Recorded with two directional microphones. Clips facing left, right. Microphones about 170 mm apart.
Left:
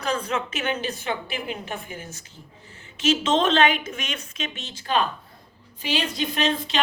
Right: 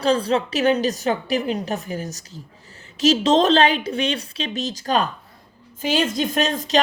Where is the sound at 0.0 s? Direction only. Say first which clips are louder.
Right 7 dB; 30° right (ahead or behind).